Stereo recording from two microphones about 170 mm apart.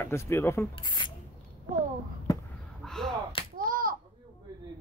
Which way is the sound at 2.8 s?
Centre (ahead or behind).